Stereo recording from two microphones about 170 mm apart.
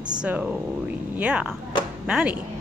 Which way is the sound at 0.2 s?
5° right (ahead or behind).